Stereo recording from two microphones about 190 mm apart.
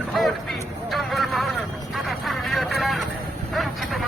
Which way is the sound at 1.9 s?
Centre (ahead or behind).